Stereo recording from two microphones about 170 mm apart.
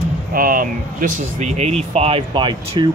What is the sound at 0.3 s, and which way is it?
Speech, 55° right (ahead or behind).